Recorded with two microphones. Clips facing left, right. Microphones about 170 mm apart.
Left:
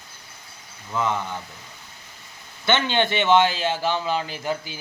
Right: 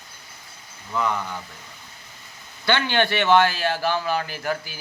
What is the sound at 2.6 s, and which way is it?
A man's voice, 20° left (ahead or behind).